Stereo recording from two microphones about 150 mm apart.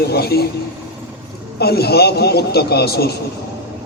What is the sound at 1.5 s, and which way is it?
A man's voice, 90° left.